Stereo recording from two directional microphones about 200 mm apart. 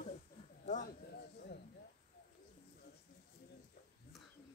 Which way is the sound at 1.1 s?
60° left (ahead or behind).